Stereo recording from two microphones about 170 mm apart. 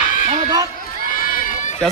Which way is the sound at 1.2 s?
55° left (ahead or behind).